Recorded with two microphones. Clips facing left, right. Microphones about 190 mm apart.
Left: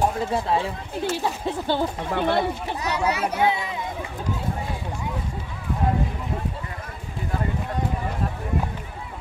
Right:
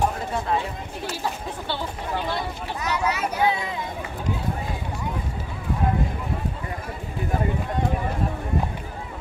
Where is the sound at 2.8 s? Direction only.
30° left (ahead or behind).